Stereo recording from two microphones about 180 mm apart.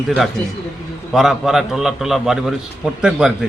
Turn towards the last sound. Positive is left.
turn(degrees=-5)  # may be behind; listen again after turning